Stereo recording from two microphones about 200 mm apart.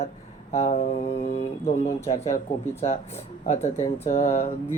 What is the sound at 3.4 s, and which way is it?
Speech, 35° left (ahead or behind).